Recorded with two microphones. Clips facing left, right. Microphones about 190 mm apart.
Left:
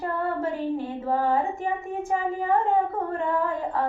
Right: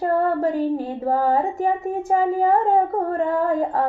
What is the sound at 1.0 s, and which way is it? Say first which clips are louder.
Female singing: right 4 dB; 40° right (ahead or behind).